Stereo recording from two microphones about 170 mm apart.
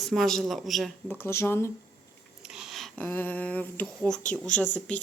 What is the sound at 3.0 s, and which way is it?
Speech, 10° left (ahead or behind).